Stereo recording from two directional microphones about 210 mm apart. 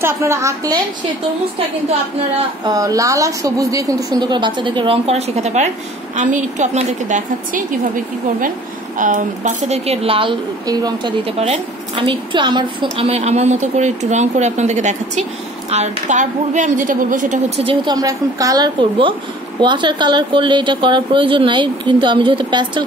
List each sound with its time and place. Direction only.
0.0 s a woman's voice: 15° right (ahead or behind)
2.6 s a woman's voice: 15° right (ahead or behind); by 17.6 s 35° right (ahead or behind)
17.6 s a woman's voice: 20° right (ahead or behind)